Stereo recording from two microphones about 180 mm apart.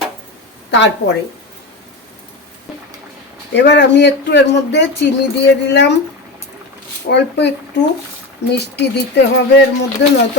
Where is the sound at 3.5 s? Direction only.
70° left (ahead or behind).